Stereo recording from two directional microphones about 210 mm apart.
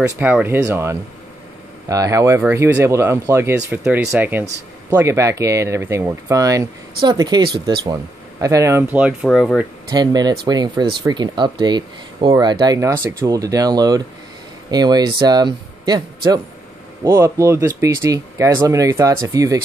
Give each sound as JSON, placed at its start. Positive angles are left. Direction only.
{"t": 0.2, "sound": "speech", "side_deg": -10}
{"t": 9.8, "sound": "speech", "side_deg": -20}
{"t": 17.0, "sound": "speech", "side_deg": -15}